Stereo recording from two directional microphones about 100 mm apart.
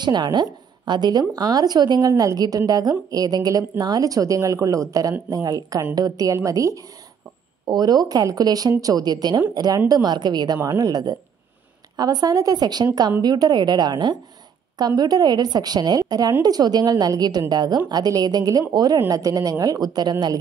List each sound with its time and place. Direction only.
0.0 s a woman's voice: 45° right (ahead or behind)